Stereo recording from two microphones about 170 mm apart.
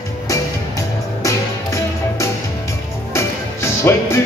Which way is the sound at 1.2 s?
20° left (ahead or behind).